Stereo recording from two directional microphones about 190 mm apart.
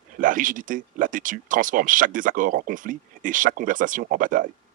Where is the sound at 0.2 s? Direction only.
45° right (ahead or behind).